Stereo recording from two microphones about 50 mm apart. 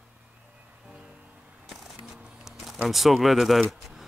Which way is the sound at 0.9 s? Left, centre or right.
Centre.